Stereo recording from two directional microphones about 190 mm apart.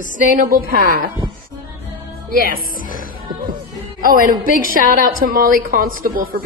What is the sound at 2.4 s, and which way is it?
Music, 50° right (ahead or behind).